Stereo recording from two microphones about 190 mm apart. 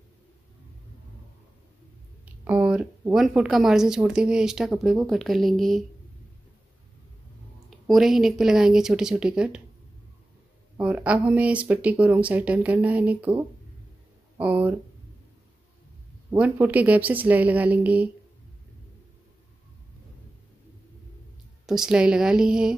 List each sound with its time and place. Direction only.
2.2 s speech: 5° right (ahead or behind)
7.8 s speech: centre (ahead or behind)
10.8 s speech: 5° right (ahead or behind)
14.4 s speech: 10° right (ahead or behind)
16.3 s speech: 10° right (ahead or behind)
21.6 s speech: 5° right (ahead or behind)